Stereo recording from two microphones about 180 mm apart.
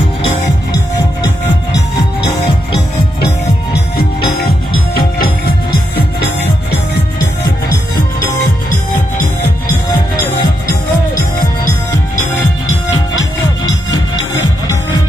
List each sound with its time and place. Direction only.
10.7 s music: 55° left (ahead or behind)